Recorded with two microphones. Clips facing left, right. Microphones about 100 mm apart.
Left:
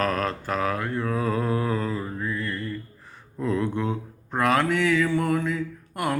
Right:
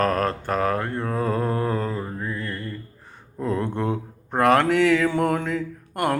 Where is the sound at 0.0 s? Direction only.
40° right (ahead or behind).